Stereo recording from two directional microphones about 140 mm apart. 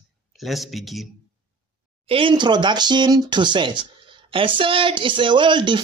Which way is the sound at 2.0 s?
40° right (ahead or behind).